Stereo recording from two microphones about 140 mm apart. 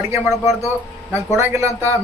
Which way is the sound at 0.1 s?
20° right (ahead or behind).